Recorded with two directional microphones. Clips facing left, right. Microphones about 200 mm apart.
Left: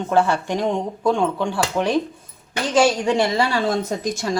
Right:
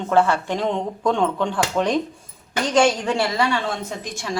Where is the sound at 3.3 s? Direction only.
35° left (ahead or behind).